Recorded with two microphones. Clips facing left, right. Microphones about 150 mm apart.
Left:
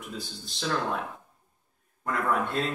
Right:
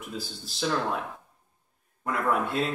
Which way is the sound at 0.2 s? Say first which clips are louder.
Right 4 dB; 5° right (ahead or behind).